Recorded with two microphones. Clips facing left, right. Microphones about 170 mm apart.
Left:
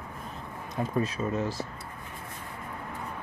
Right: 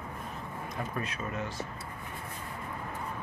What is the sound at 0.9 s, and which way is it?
Speech, 35° left (ahead or behind).